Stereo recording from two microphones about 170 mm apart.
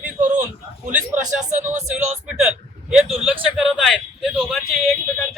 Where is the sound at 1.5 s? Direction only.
45° right (ahead or behind).